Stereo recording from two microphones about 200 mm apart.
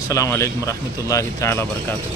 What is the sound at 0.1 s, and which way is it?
Speech, 15° left (ahead or behind).